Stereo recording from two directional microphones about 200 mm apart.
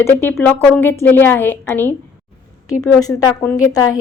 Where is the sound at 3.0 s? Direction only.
20° left (ahead or behind).